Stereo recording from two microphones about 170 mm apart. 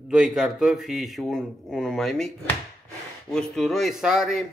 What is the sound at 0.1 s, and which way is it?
Speech, 5° right (ahead or behind).